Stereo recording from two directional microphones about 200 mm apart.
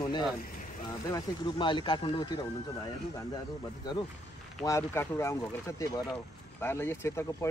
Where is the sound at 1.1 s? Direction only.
25° left (ahead or behind).